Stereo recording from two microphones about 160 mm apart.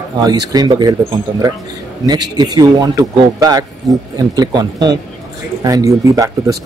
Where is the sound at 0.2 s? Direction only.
25° right (ahead or behind).